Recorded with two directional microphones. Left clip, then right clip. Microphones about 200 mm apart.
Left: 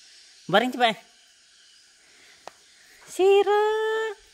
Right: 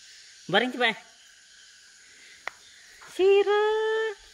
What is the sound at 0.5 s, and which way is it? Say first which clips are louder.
Speech: left 3 dB; 25° left (ahead or behind).